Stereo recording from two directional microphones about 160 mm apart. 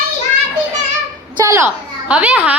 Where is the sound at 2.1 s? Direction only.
10° right (ahead or behind).